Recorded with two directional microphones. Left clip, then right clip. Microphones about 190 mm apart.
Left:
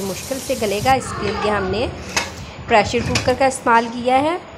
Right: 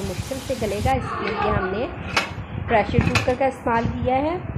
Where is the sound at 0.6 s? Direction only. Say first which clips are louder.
Left 7 dB; 25° left (ahead or behind).